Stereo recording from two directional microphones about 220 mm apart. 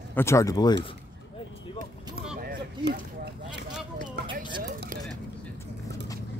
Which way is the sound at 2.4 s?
45° right (ahead or behind).